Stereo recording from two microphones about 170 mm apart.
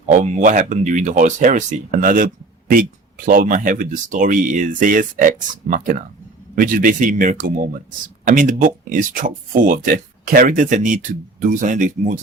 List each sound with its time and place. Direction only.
0.1 s speech: 45° right (ahead or behind)